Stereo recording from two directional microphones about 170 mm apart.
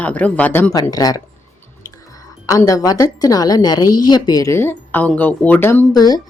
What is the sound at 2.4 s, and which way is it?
A woman's voice, 20° left (ahead or behind).